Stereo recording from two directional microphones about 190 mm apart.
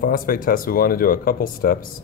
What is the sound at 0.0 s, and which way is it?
Speech, 50° left (ahead or behind).